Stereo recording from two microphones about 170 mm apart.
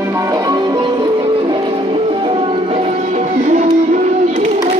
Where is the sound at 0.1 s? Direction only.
20° right (ahead or behind).